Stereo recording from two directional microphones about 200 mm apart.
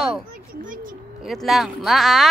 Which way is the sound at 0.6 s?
40° right (ahead or behind).